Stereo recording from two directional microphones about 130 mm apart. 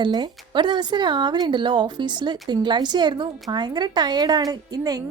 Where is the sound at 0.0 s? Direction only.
35° right (ahead or behind).